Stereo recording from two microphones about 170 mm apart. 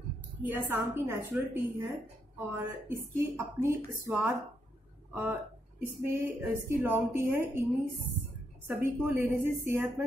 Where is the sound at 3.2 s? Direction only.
15° right (ahead or behind).